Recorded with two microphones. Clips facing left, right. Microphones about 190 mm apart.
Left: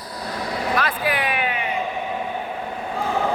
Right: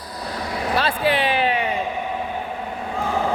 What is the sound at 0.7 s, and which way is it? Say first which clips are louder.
Speech: right 5 dB; 30° right (ahead or behind).